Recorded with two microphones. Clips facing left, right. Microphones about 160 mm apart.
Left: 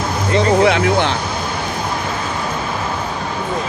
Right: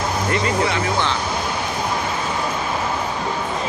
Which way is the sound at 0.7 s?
65° left (ahead or behind).